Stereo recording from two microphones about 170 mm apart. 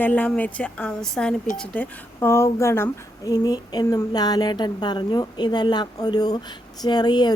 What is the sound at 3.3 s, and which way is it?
Speech, 25° left (ahead or behind).